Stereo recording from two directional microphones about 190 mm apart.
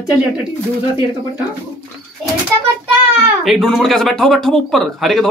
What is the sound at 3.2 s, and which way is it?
Speech, centre (ahead or behind).